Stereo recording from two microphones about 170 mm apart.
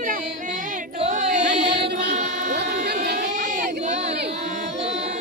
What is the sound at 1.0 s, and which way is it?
Chant, 45° right (ahead or behind).